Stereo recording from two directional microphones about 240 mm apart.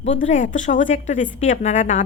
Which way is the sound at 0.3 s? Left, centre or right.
Left.